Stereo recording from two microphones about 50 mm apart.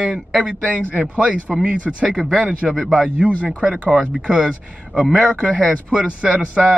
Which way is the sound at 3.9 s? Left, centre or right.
Centre.